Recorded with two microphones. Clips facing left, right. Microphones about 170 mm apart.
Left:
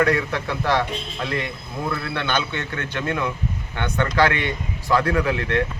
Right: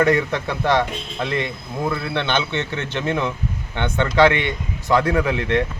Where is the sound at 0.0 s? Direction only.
20° right (ahead or behind).